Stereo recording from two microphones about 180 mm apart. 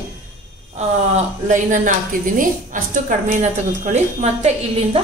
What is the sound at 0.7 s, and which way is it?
A woman's voice, 40° right (ahead or behind).